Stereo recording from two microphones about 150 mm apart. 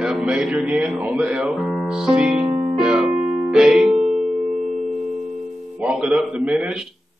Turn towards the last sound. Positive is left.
turn(degrees=-5)  # may be behind; listen again after turning